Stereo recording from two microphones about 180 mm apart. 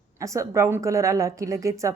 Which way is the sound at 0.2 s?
15° right (ahead or behind).